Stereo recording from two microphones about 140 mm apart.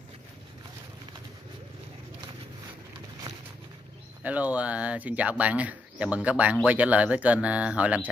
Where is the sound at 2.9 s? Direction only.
30° right (ahead or behind).